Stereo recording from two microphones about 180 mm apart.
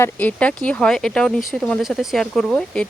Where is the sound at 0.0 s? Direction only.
10° left (ahead or behind).